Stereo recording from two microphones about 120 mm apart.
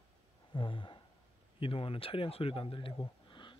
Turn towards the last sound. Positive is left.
turn(degrees=40)  # may be behind; listen again after turning